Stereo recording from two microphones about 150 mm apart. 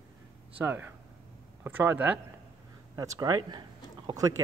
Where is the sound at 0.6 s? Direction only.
15° right (ahead or behind).